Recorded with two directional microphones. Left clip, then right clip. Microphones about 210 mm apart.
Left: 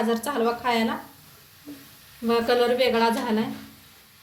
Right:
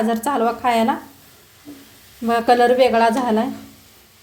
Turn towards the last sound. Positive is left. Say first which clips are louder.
# right 6 dB
turn(degrees=-40)  # may be behind; listen again after turning